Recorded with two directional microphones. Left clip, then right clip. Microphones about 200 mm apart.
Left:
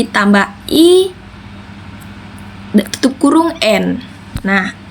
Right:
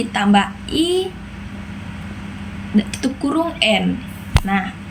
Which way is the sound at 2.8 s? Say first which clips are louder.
Left 8 dB; 20° left (ahead or behind).